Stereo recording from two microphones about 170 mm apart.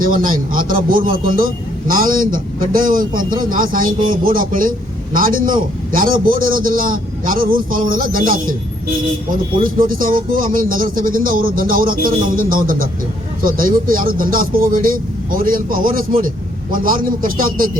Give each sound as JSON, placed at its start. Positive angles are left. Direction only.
{"t": 0.0, "sound": "a man's voice", "side_deg": -55}
{"t": 9.8, "sound": "a man's voice", "side_deg": -55}